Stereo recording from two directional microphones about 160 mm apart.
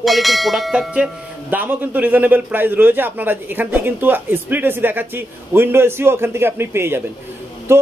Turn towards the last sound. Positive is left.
turn(degrees=-15)  # may be behind; listen again after turning